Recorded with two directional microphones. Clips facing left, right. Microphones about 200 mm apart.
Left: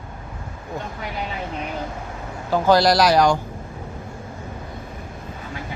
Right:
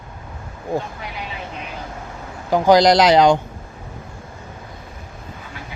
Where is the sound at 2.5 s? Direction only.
15° right (ahead or behind).